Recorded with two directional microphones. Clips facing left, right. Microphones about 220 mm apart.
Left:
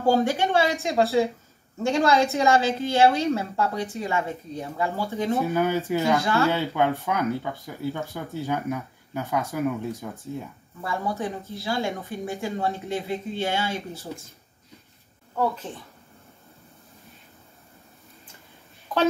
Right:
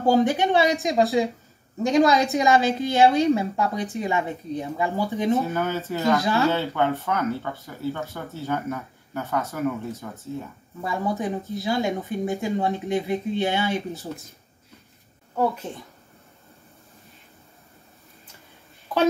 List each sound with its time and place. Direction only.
0.0 s a woman's voice: 15° right (ahead or behind)
5.5 s speech: 10° left (ahead or behind)
6.2 s a woman's voice: 15° right (ahead or behind)
6.5 s speech: 15° left (ahead or behind)
10.8 s a woman's voice: 20° right (ahead or behind)